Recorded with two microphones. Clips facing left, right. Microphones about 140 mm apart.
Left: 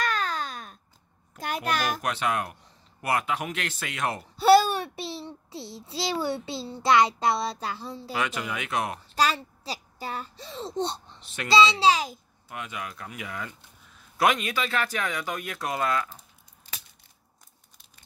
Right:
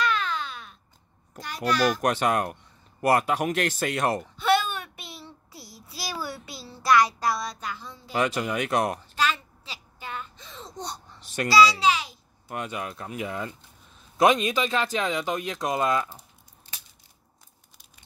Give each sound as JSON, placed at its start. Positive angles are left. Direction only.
{"t": 0.0, "sound": "a sound", "side_deg": 40}
{"t": 1.4, "sound": "a child's voice", "side_deg": 55}
{"t": 2.0, "sound": "speech", "side_deg": -45}
{"t": 4.4, "sound": "a child's voice", "side_deg": 35}
{"t": 8.1, "sound": "speech", "side_deg": -35}
{"t": 9.1, "sound": "a child's voice", "side_deg": 35}
{"t": 12.4, "sound": "speech", "side_deg": -35}